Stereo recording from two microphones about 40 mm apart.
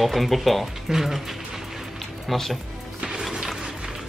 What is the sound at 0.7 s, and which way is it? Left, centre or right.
Music, centre.